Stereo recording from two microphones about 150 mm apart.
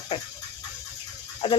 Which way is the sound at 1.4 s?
30° left (ahead or behind).